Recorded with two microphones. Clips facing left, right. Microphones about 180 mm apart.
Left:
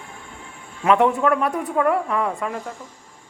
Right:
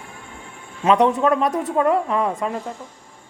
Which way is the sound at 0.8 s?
20° right (ahead or behind).